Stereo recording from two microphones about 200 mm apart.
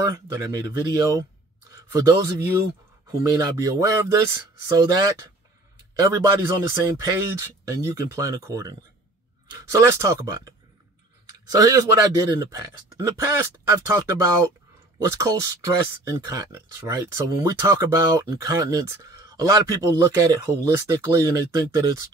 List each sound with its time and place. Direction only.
0.0 s speech: 15° right (ahead or behind)
6.3 s speech: 15° right (ahead or behind)